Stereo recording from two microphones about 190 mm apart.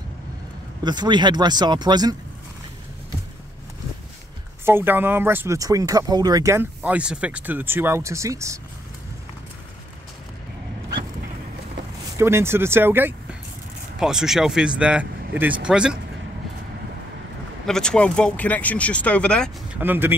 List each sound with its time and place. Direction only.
0.8 s speech: 25° right (ahead or behind)
4.6 s speech: 10° right (ahead or behind)
12.2 s speech: 15° right (ahead or behind)
17.6 s speech: 5° left (ahead or behind)
19.7 s speech: 10° right (ahead or behind)